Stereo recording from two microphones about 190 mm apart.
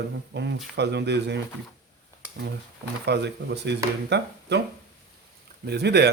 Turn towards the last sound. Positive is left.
turn(degrees=-60)  # may be behind; listen again after turning